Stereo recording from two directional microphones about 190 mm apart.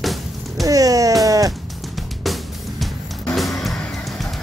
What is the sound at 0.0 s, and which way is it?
Music, centre (ahead or behind).